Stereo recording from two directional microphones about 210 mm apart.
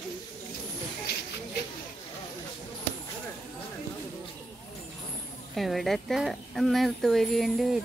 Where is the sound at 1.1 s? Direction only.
50° left (ahead or behind).